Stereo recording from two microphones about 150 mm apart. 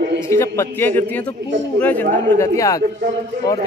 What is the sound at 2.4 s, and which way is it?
Speech, 20° left (ahead or behind).